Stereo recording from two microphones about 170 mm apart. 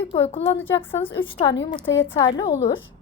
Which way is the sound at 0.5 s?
10° left (ahead or behind).